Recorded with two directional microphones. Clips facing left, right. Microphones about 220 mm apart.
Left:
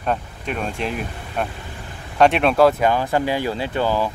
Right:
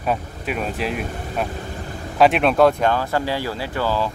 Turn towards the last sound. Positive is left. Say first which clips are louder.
# left 2 dB
turn(degrees=20)  # may be behind; listen again after turning